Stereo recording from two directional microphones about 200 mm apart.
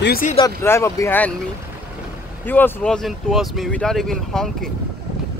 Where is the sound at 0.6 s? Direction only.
10° left (ahead or behind).